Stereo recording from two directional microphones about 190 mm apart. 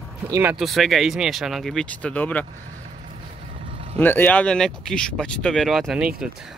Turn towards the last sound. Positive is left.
turn(degrees=0)  # may be behind; listen again after turning